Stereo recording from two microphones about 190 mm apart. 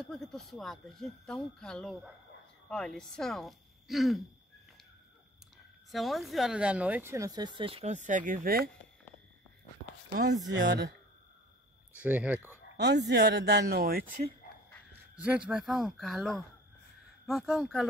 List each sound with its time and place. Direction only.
0.0 s speech: centre (ahead or behind)
5.9 s speech: centre (ahead or behind); by 8.6 s 50° right (ahead or behind)
10.5 s speech: 65° right (ahead or behind)
11.9 s speech: 5° right (ahead or behind)
12.7 s speech: 65° right (ahead or behind)
15.1 s speech: 5° right (ahead or behind)